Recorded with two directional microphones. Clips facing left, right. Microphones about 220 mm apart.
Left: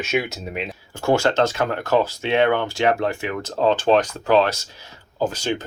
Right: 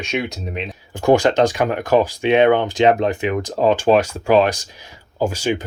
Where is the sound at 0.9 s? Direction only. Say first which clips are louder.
Right 5 dB; 15° right (ahead or behind).